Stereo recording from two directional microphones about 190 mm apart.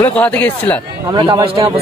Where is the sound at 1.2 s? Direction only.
25° right (ahead or behind).